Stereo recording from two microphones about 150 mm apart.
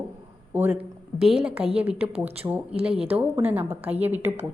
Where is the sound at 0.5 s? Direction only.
10° right (ahead or behind).